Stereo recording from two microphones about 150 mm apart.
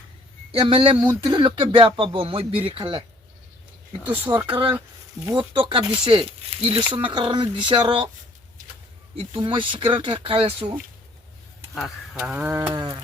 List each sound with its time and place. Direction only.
0.6 s speech: 35° right (ahead or behind)
4.3 s music: 25° right (ahead or behind)
5.2 s speech: 30° right (ahead or behind)
9.3 s speech: 35° right (ahead or behind)
11.8 s speech: 10° right (ahead or behind)
12.7 s music: 25° right (ahead or behind)